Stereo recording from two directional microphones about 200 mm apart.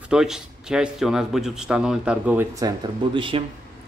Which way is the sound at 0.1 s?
5° right (ahead or behind).